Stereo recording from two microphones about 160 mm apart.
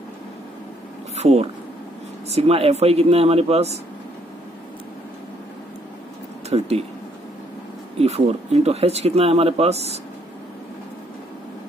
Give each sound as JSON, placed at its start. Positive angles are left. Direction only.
{"t": 1.1, "sound": "speech", "side_deg": -40}
{"t": 6.5, "sound": "speech", "side_deg": -40}
{"t": 8.0, "sound": "speech", "side_deg": -40}